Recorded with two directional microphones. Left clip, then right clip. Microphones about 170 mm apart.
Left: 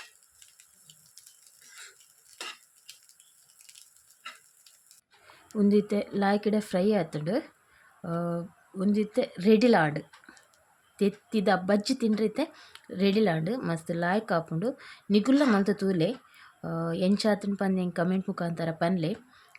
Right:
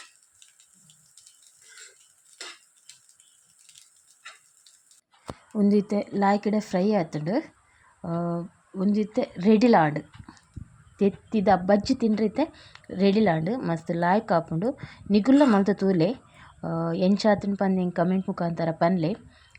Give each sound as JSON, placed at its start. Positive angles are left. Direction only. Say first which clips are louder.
{"t": 5.7, "sound": "a woman's voice", "louder": "even", "side_deg": -10}